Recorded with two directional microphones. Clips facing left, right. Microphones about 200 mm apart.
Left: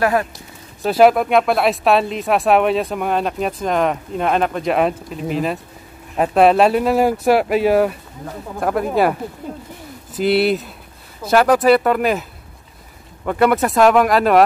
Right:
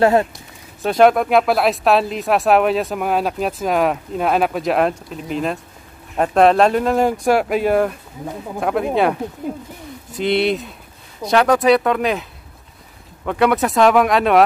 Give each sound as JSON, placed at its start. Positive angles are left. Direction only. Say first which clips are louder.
{"t": 0.0, "sound": "speech", "louder": "right 3 dB", "side_deg": -25}
{"t": 0.8, "sound": "speech", "louder": "left 1 dB", "side_deg": 5}
{"t": 10.1, "sound": "speech", "louder": "left 2 dB", "side_deg": 5}